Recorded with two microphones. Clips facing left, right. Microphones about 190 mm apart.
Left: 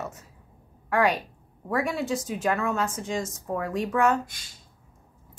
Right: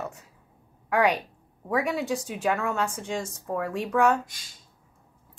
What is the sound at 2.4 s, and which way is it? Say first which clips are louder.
Speech: even; centre (ahead or behind).